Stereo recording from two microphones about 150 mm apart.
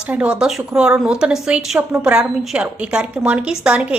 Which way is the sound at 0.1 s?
10° right (ahead or behind).